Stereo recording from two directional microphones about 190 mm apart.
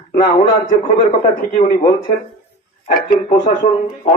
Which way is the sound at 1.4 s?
45° left (ahead or behind).